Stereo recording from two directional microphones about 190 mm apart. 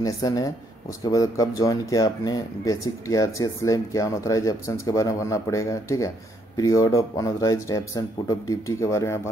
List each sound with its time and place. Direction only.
0.0 s speech: 20° left (ahead or behind)